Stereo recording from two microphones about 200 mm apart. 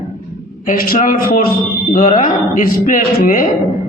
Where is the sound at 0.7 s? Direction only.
40° left (ahead or behind).